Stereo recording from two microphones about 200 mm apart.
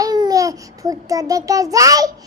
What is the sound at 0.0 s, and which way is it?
A child's voice, 20° right (ahead or behind).